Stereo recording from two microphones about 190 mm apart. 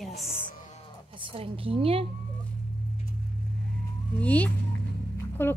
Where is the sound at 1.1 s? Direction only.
30° right (ahead or behind).